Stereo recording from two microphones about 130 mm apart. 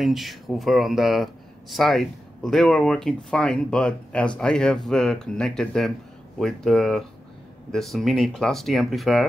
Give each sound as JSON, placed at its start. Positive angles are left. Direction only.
{"t": 0.0, "sound": "speech", "side_deg": 0}